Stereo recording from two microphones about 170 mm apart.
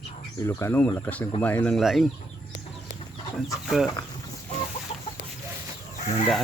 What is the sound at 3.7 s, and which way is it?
Speech, centre (ahead or behind).